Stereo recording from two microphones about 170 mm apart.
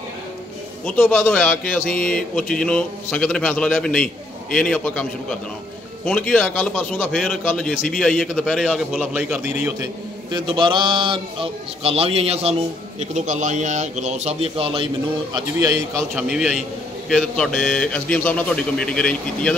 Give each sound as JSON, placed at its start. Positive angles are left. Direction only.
{"t": 0.8, "sound": "a man's voice", "side_deg": 5}
{"t": 10.3, "sound": "a man's voice", "side_deg": -25}
{"t": 15.3, "sound": "a man's voice", "side_deg": -20}
{"t": 16.2, "sound": "a man's voice", "side_deg": -5}